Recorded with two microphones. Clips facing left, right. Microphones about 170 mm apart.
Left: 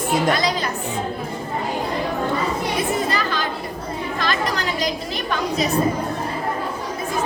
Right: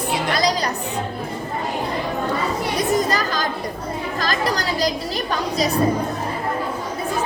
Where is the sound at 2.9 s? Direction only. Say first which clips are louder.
Right 2 dB; 40° right (ahead or behind).